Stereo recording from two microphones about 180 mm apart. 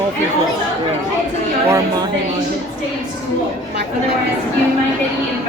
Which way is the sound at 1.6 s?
15° right (ahead or behind).